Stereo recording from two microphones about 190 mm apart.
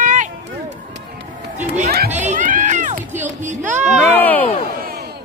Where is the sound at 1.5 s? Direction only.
40° right (ahead or behind).